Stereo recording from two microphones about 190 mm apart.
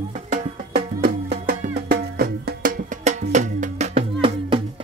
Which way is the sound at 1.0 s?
55° right (ahead or behind).